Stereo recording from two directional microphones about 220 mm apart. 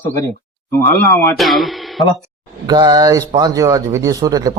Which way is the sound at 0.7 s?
10° left (ahead or behind).